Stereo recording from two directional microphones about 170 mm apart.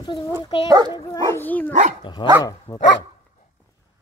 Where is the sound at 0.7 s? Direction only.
25° right (ahead or behind).